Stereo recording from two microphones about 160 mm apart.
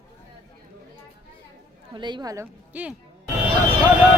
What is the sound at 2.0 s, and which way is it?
Speech, 25° right (ahead or behind).